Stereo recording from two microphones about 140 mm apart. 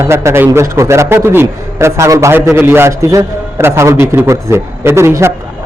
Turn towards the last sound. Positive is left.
turn(degrees=-20)  # may be behind; listen again after turning